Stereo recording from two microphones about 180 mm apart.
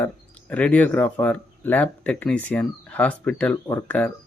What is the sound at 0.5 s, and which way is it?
Speech, 10° left (ahead or behind).